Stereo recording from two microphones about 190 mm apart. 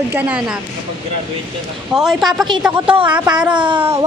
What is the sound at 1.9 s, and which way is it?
A woman's voice, 5° right (ahead or behind).